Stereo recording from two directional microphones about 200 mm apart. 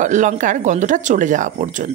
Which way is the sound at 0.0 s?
40° right (ahead or behind).